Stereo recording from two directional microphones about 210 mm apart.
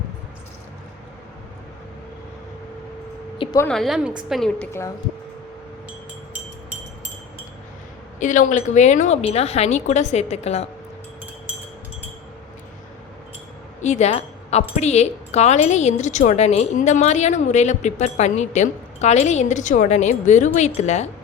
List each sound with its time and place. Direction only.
3.3 s a sound: 25° left (ahead or behind)
3.6 s a woman's voice: centre (ahead or behind)
8.2 s speech: 35° left (ahead or behind)
13.8 s speech: 35° left (ahead or behind)